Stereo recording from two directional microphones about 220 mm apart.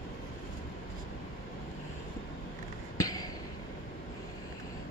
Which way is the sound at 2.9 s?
15° left (ahead or behind).